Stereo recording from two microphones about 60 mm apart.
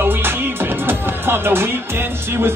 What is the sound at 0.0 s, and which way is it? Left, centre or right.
Speech, right.